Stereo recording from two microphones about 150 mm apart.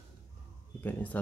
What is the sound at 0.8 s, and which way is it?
Speech, 10° left (ahead or behind).